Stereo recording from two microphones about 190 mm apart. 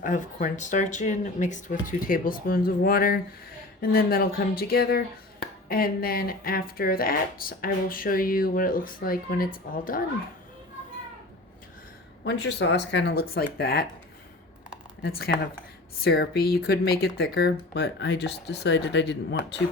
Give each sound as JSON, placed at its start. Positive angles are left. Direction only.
{"t": 0.0, "sound": "speech", "side_deg": 45}
{"t": 12.2, "sound": "speech", "side_deg": 70}
{"t": 15.0, "sound": "speech", "side_deg": 55}